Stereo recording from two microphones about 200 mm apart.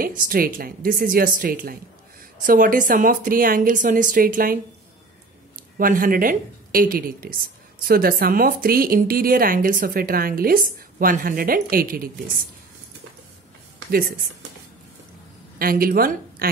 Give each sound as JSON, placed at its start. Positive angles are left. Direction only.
{"t": 0.0, "sound": "speech", "side_deg": -45}
{"t": 5.6, "sound": "a woman's voice", "side_deg": -45}
{"t": 13.8, "sound": "speech", "side_deg": -50}
{"t": 15.6, "sound": "speech", "side_deg": -45}